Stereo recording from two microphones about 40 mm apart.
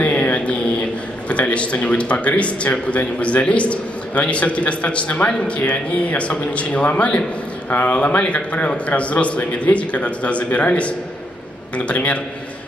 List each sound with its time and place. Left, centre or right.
0.0 s mantra: left
1.3 s a man's voice: left